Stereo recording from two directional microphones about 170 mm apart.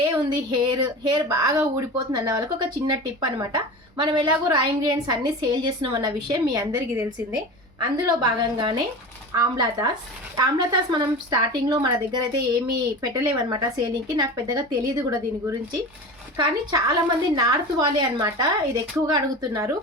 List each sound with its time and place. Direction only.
0.2 s speech: 25° right (ahead or behind)
7.8 s speech: 25° right (ahead or behind)